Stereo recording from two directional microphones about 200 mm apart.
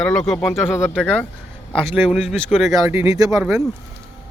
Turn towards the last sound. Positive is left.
turn(degrees=-15)  # may be behind; listen again after turning